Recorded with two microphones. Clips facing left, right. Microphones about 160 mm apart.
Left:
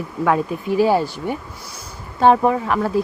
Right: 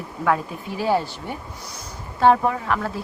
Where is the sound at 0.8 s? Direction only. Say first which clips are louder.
Left 5 dB; 10° left (ahead or behind).